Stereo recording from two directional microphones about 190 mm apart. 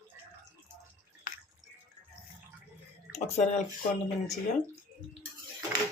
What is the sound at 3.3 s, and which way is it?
Speech, 35° left (ahead or behind).